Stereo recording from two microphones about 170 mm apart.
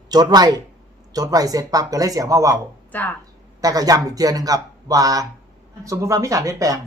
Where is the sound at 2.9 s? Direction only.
10° left (ahead or behind).